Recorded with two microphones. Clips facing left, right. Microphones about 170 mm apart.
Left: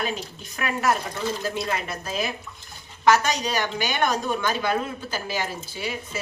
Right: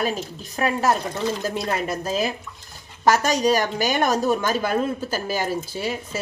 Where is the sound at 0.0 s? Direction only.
40° right (ahead or behind).